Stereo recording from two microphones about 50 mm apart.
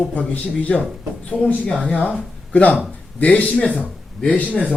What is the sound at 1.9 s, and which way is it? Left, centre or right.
A woman's voice, left.